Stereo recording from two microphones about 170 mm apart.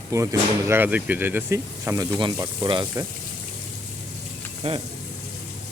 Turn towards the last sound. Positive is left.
turn(degrees=-35)  # may be behind; listen again after turning